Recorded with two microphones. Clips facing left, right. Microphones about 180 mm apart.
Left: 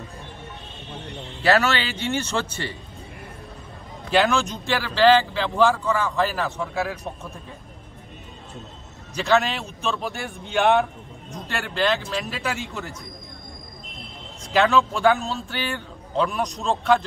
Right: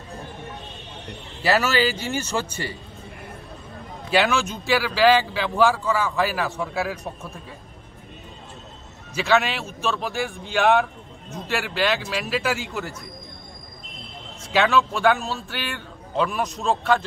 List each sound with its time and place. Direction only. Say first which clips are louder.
1.4 s speech: even; 5° right (ahead or behind)
4.1 s a man's voice: left 1 dB; 5° right (ahead or behind)
9.1 s a man's voice: even; 5° right (ahead or behind)
14.5 s a man's voice: left 1 dB; centre (ahead or behind)